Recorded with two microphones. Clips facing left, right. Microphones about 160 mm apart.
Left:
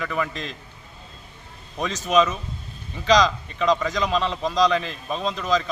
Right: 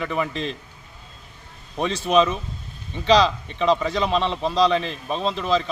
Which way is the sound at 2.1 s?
35° right (ahead or behind).